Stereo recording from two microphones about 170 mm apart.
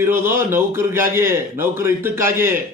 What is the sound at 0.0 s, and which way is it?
A man's voice, 15° right (ahead or behind).